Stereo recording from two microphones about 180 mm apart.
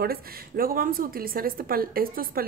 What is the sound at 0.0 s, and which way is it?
A woman's voice, 55° right (ahead or behind).